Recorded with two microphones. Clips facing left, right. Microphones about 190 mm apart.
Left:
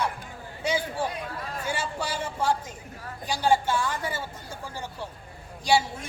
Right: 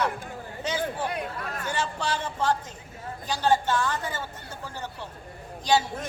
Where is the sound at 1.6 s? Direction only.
10° left (ahead or behind).